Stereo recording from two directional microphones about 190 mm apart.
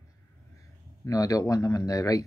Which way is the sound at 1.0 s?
15° left (ahead or behind).